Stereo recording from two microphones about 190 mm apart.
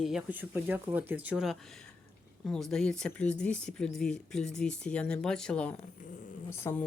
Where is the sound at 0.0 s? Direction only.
5° right (ahead or behind).